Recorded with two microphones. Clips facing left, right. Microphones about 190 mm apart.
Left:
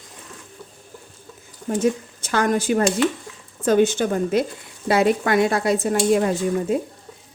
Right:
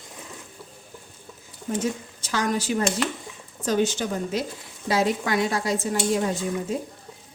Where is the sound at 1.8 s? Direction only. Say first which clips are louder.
Left 7 dB; 55° left (ahead or behind).